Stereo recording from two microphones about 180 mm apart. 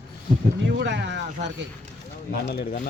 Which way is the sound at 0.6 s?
80° right.